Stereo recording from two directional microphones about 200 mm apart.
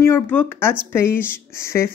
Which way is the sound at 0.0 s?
10° left (ahead or behind).